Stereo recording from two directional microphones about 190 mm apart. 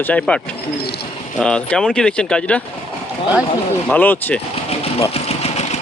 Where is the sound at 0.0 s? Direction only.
5° left (ahead or behind).